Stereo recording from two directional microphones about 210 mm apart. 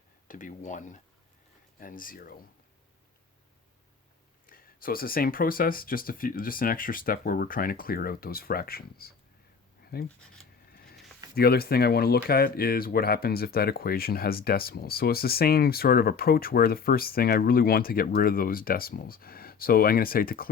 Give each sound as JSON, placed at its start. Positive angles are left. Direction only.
{"t": 0.3, "sound": "speech", "side_deg": 40}
{"t": 4.4, "sound": "speech", "side_deg": 45}
{"t": 9.8, "sound": "a sound", "side_deg": 45}
{"t": 11.3, "sound": "speech", "side_deg": 50}